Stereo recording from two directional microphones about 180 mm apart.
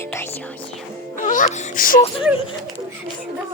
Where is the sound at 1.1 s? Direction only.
45° left (ahead or behind).